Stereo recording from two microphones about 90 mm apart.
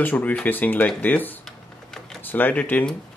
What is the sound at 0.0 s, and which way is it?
Speech, 20° left (ahead or behind).